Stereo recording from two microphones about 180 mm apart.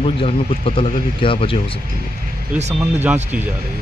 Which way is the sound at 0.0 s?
30° left (ahead or behind).